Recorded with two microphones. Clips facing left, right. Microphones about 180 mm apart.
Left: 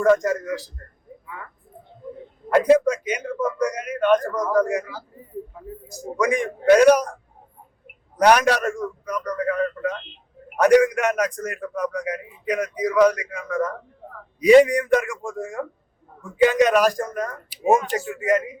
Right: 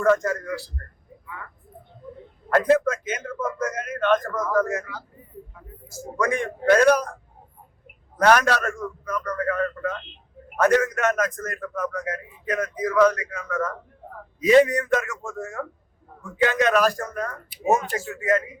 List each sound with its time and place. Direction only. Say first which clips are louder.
0.0 s a man's voice: left 3 dB; 15° left (ahead or behind)
2.5 s a man's voice: left 3 dB; 15° left (ahead or behind)
5.9 s a man's voice: left 3 dB; 15° left (ahead or behind)
8.2 s a man's voice: left 2 dB; 15° left (ahead or behind)